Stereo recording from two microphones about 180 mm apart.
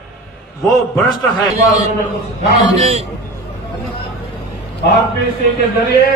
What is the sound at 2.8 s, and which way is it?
Speech, 35° right (ahead or behind).